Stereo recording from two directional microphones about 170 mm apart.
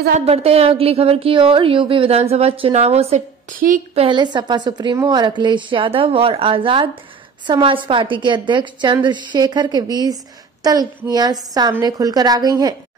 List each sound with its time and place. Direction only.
0.2 s a woman's voice: 35° right (ahead or behind)
3.5 s a woman's voice: 55° right (ahead or behind)
3.9 s a woman's voice: 30° right (ahead or behind)